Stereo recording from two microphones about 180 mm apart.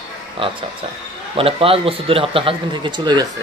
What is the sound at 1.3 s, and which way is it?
A man's voice, 30° right (ahead or behind).